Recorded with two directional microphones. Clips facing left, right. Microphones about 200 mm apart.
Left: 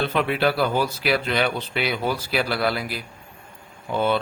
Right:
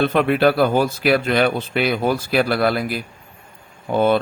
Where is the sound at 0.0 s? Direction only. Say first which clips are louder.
Right 6 dB; 50° right (ahead or behind).